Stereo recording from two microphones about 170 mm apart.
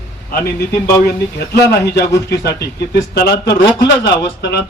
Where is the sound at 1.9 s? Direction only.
90° left.